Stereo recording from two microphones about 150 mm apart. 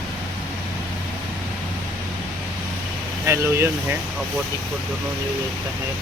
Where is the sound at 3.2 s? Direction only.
15° right (ahead or behind).